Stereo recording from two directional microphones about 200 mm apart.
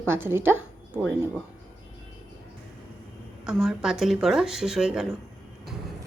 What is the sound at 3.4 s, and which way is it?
A woman's voice, centre (ahead or behind).